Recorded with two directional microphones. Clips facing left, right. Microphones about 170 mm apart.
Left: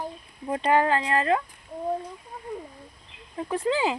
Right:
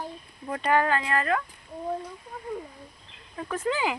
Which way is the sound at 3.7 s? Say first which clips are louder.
Left 2 dB; 25° left (ahead or behind).